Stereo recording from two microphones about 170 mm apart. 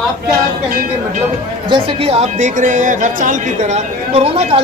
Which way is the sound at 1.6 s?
30° right (ahead or behind).